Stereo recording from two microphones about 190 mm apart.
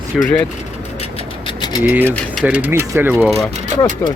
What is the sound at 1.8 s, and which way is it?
Speech, 10° right (ahead or behind).